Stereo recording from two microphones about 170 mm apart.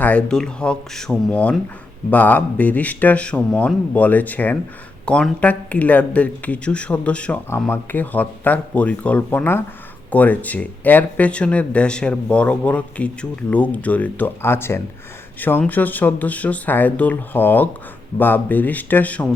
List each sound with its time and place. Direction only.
0.0 s speech: 10° left (ahead or behind)